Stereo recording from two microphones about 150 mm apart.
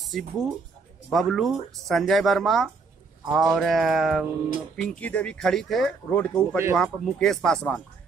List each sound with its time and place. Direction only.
0.0 s speech: centre (ahead or behind)
6.5 s speech: 15° right (ahead or behind)
6.8 s speech: 5° left (ahead or behind)